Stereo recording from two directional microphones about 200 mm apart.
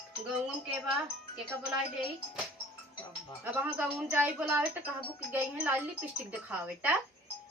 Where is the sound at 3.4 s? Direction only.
10° right (ahead or behind).